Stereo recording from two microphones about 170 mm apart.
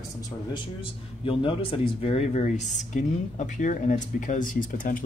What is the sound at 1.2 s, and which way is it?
Speech, 30° left (ahead or behind).